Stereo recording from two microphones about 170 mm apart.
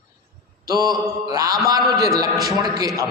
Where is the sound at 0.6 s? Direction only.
20° right (ahead or behind).